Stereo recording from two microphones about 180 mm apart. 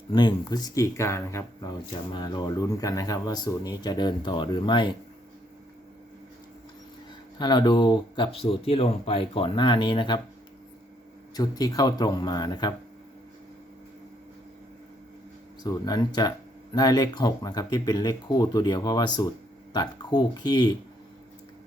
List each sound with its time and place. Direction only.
0.1 s speech: 25° left (ahead or behind)
7.3 s speech: 25° left (ahead or behind)
11.3 s speech: 20° left (ahead or behind)
15.6 s speech: 20° left (ahead or behind)